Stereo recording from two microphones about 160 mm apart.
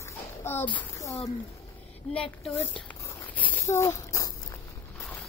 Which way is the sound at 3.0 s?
10° left (ahead or behind).